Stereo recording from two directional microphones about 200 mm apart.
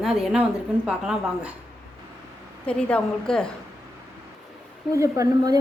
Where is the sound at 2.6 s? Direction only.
5° left (ahead or behind).